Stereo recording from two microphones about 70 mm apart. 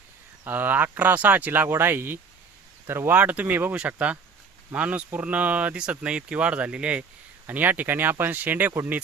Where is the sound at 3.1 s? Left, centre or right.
Right.